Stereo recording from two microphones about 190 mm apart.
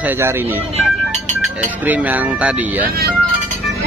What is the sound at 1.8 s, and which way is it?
Speech, 10° right (ahead or behind).